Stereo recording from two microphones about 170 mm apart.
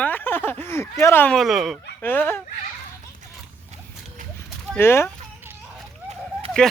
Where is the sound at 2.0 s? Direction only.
10° left (ahead or behind).